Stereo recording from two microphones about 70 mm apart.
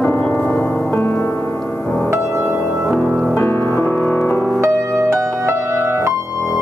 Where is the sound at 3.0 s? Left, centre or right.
Centre.